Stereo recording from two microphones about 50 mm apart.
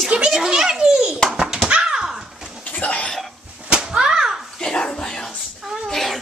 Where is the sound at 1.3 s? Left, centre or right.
Centre.